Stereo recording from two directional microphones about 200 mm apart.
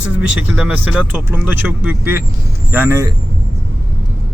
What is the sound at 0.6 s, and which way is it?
Speech, 5° right (ahead or behind).